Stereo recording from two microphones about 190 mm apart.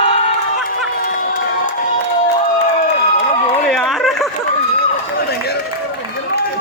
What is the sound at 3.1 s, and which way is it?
Run, 35° left (ahead or behind).